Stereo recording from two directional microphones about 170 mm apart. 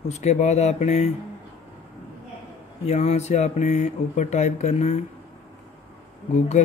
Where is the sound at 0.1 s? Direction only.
40° left (ahead or behind).